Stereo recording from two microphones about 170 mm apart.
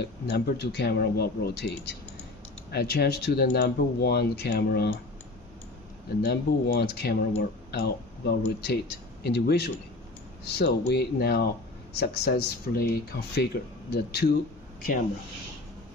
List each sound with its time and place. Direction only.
0.0 s speech: 80° left
6.0 s speech: 65° left (ahead or behind)